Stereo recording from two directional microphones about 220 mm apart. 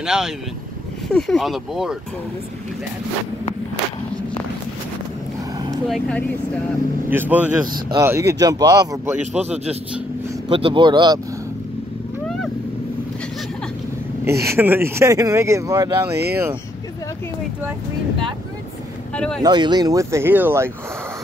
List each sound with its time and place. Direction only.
0.0 s speech: centre (ahead or behind)
5.9 s speech: 5° left (ahead or behind)
7.1 s speech: 10° right (ahead or behind)
10.5 s speech: 25° right (ahead or behind)
14.2 s speech: 10° right (ahead or behind)
19.1 s speech: 5° left (ahead or behind)
19.4 s speech: 20° right (ahead or behind)